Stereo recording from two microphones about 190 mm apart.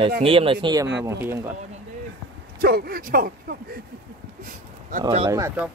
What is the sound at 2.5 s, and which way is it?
Speech, 55° right (ahead or behind).